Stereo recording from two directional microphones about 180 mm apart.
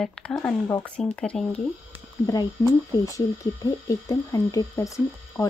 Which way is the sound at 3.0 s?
20° left (ahead or behind).